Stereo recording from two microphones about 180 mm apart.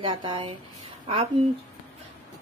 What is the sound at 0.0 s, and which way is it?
Speech, 25° right (ahead or behind).